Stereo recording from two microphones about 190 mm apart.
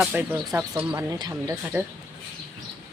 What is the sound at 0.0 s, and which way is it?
Speech, 10° right (ahead or behind).